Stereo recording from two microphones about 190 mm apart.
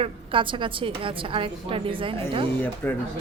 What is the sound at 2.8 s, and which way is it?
Speech, 10° left (ahead or behind).